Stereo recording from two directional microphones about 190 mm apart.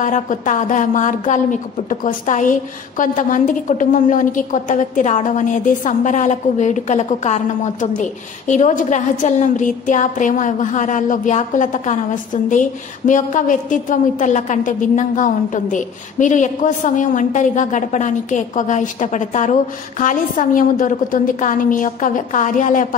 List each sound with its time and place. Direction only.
0.0 s a woman's voice: 40° left (ahead or behind)